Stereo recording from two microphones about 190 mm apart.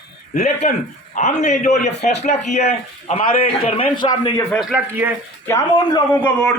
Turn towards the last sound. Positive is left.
turn(degrees=15)  # may be behind; listen again after turning